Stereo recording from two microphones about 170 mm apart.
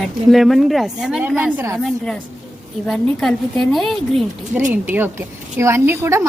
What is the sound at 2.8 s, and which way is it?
A woman's voice, centre (ahead or behind).